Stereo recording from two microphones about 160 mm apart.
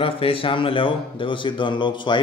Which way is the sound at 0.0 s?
35° left (ahead or behind).